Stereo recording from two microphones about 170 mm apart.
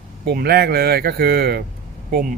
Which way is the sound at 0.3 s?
65° right (ahead or behind).